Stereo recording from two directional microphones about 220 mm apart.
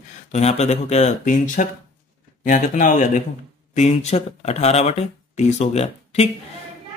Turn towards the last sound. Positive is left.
turn(degrees=30)  # may be behind; listen again after turning